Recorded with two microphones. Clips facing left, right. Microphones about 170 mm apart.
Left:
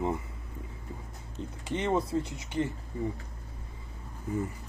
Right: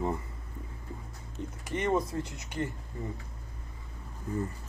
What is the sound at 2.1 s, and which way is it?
Speech, 10° left (ahead or behind).